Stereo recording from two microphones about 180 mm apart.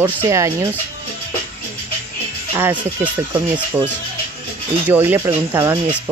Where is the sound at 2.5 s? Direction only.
10° right (ahead or behind).